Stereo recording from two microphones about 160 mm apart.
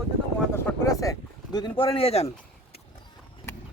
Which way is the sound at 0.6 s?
20° left (ahead or behind).